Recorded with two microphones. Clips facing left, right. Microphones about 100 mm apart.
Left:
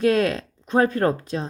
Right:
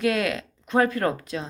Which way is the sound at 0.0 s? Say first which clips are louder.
Left 4 dB; 35° left (ahead or behind).